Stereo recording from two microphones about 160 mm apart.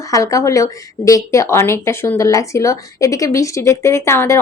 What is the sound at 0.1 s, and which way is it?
Speech, 20° left (ahead or behind).